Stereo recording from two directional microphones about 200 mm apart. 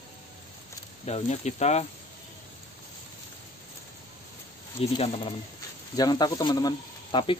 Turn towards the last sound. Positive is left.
turn(degrees=20)  # may be behind; listen again after turning